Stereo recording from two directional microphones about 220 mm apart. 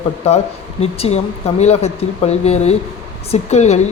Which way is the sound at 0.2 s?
30° left (ahead or behind).